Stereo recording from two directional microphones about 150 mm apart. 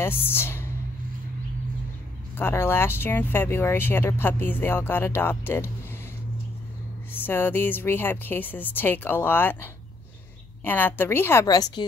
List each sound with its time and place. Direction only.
0.0 s speech: 15° left (ahead or behind)
2.3 s speech: 15° left (ahead or behind)
7.1 s speech: 15° left (ahead or behind)